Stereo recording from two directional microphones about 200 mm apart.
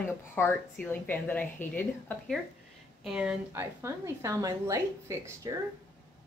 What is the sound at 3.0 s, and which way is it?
A woman's voice, 5° right (ahead or behind).